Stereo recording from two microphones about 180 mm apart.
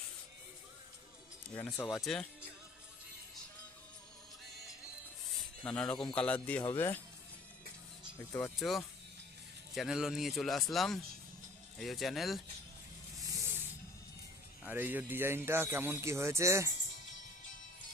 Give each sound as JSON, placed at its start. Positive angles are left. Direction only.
{"t": 1.5, "sound": "speech", "side_deg": 10}
{"t": 5.6, "sound": "speech", "side_deg": 5}
{"t": 8.3, "sound": "speech", "side_deg": 15}
{"t": 8.5, "sound": "speech", "side_deg": 0}
{"t": 13.3, "sound": "a sound", "side_deg": -10}
{"t": 14.6, "sound": "speech", "side_deg": -10}